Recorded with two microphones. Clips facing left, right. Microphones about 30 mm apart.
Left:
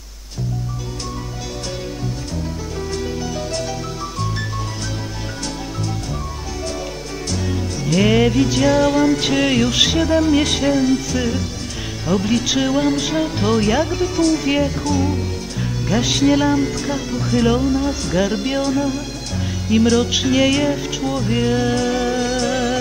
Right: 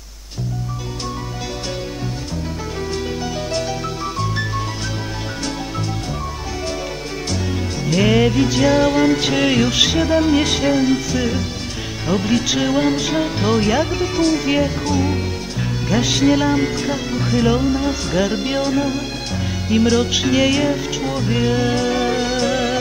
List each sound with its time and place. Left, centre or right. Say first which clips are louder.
7.8 s music: even; centre
9.2 s music: even; centre
10.0 s music: even; centre
14.4 s music: even; centre
15.9 s music: even; centre
16.5 s speech: right 1 dB; right
18.2 s music: even; centre